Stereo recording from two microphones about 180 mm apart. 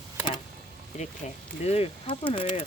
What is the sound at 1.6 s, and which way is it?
Speech, 35° left (ahead or behind).